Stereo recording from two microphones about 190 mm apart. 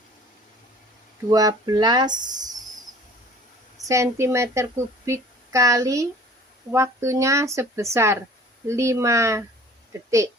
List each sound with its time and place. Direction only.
1.3 s speech: 20° right (ahead or behind)
3.8 s a woman's voice: 15° right (ahead or behind)